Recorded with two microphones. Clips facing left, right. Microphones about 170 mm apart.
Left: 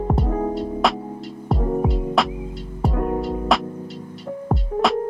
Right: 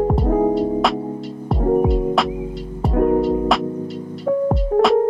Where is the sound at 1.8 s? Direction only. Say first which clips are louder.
Right 3 dB; centre (ahead or behind).